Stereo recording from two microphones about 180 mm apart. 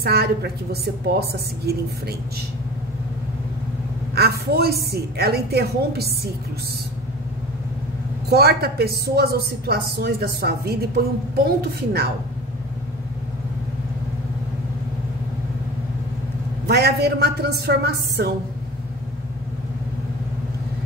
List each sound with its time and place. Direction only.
0.0 s a woman's voice: 60° right (ahead or behind)
4.1 s a woman's voice: 60° right (ahead or behind)
8.3 s a woman's voice: 60° right (ahead or behind)
16.6 s a woman's voice: 65° right (ahead or behind)